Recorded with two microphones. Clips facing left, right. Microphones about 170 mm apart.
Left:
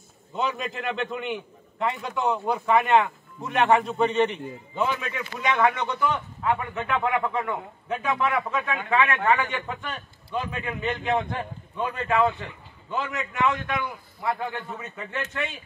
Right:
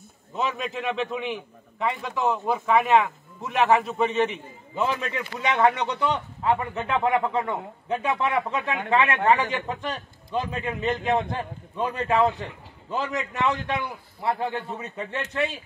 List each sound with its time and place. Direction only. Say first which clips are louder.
0.4 s a man's voice: even; centre (ahead or behind)
5.4 s a man's voice: right 1 dB; 30° right (ahead or behind)